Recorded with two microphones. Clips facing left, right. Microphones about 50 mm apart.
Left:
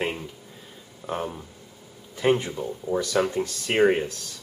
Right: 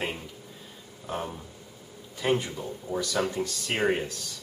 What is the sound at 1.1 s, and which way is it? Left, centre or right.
Speech, centre.